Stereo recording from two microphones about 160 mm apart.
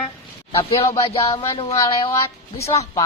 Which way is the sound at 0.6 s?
35° left (ahead or behind).